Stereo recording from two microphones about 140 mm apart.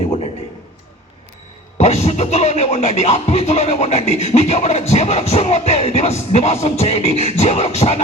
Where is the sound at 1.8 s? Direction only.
50° left (ahead or behind).